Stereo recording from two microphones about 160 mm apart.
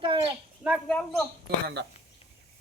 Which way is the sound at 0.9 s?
5° left (ahead or behind).